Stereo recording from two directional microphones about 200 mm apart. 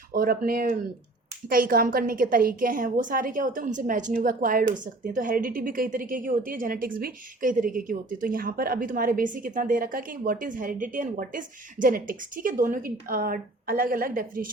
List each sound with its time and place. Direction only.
0.1 s a woman's voice: 45° right (ahead or behind)